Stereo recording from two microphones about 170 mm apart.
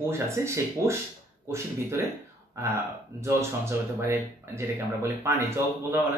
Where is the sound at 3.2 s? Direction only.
15° right (ahead or behind).